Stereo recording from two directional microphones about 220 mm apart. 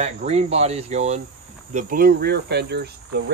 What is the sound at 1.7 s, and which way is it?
Cricket, 40° right (ahead or behind).